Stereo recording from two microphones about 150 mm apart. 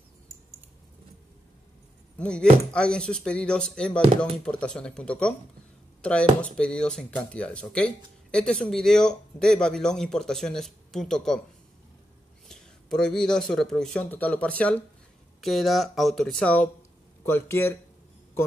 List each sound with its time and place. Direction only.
2.1 s speech: 5° left (ahead or behind)
12.4 s speech: centre (ahead or behind)